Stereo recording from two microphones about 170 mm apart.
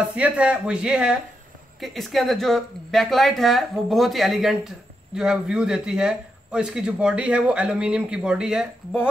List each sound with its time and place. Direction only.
0.0 s speech: 10° right (ahead or behind)